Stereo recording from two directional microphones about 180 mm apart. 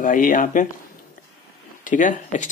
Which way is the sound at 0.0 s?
45° left (ahead or behind).